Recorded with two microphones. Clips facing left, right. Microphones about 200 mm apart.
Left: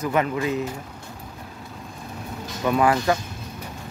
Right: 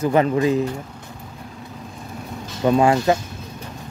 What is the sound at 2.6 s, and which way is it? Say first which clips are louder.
Speech: right 4 dB; 25° right (ahead or behind).